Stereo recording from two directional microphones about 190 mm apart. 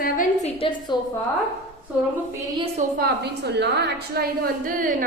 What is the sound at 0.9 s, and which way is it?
Speech, 25° left (ahead or behind).